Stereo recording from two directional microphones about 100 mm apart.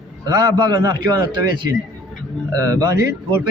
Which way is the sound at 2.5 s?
35° right (ahead or behind).